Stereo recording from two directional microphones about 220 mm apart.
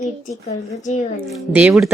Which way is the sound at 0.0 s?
35° left (ahead or behind).